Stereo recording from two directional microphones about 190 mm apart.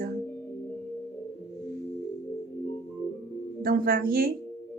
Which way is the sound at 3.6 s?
50° right (ahead or behind).